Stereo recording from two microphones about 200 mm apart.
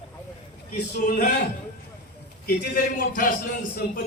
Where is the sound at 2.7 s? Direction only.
45° left (ahead or behind).